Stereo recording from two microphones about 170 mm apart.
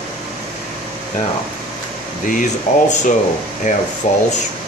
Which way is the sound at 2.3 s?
45° left (ahead or behind).